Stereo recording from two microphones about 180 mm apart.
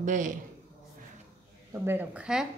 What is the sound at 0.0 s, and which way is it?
Speech, 45° right (ahead or behind).